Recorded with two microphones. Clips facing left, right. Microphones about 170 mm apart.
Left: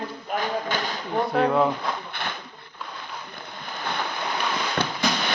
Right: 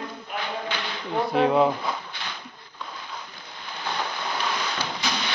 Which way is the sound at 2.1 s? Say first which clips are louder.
Left 5 dB; 55° left (ahead or behind).